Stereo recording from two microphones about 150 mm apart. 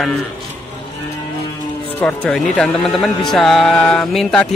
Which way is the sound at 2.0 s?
5° left (ahead or behind).